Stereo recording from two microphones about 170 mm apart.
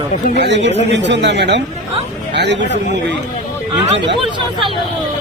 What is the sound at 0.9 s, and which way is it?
Speech, 90° right.